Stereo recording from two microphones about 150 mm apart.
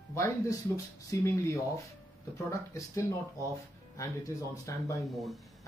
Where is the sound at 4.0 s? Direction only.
20° left (ahead or behind).